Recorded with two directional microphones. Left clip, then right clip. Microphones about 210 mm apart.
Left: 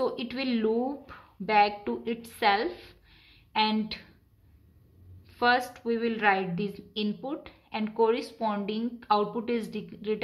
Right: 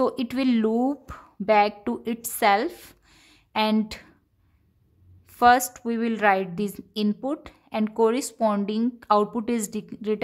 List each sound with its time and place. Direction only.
0.0 s speech: 55° right (ahead or behind)
5.3 s a woman's voice: 50° right (ahead or behind)